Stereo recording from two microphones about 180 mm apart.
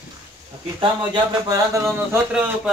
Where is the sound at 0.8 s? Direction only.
25° right (ahead or behind).